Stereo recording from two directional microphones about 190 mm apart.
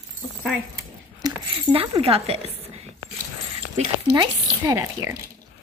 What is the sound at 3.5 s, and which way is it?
Speech, 25° right (ahead or behind).